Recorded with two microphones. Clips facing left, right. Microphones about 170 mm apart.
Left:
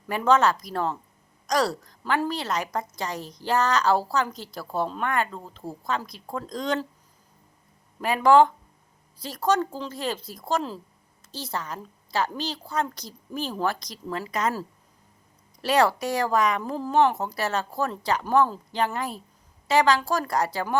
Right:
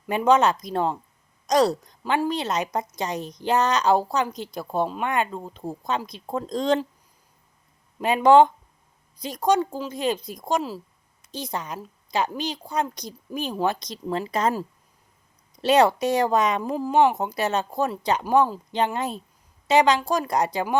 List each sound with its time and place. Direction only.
0.1 s a woman's voice: 20° right (ahead or behind)
7.9 s a woman's voice: 20° right (ahead or behind)
15.5 s a woman's voice: 20° right (ahead or behind)
18.7 s a woman's voice: 20° right (ahead or behind)